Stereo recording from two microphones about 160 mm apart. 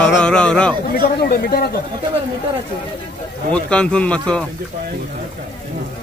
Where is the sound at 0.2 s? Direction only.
5° left (ahead or behind).